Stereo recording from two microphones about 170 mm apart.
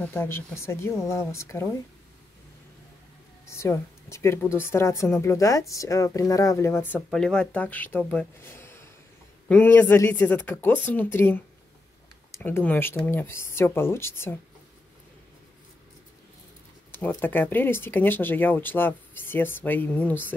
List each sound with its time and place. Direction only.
0.0 s a woman's voice: 15° left (ahead or behind)
3.4 s a woman's voice: 15° left (ahead or behind)
16.9 s a woman's voice: 10° left (ahead or behind)